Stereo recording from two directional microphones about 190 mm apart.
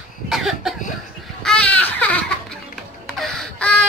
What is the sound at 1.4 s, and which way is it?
Baby cry, 5° left (ahead or behind).